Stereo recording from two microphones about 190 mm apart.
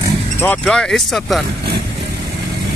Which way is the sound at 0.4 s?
5° left (ahead or behind).